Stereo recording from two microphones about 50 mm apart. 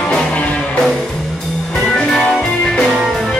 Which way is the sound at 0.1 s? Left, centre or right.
Left.